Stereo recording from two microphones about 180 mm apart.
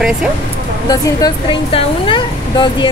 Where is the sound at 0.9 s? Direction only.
25° left (ahead or behind).